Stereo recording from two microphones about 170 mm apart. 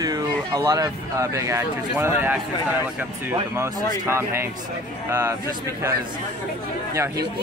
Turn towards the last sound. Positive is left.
turn(degrees=-15)  # may be behind; listen again after turning